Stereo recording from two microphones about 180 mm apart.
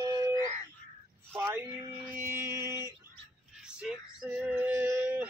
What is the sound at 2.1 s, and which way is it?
Mantra, 15° right (ahead or behind).